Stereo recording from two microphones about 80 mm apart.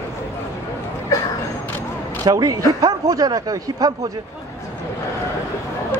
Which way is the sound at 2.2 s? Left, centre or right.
Right.